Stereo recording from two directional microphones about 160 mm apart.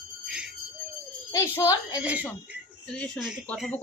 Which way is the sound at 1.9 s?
10° right (ahead or behind).